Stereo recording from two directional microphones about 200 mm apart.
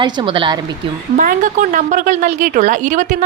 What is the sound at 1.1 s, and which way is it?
Speech, 40° right (ahead or behind).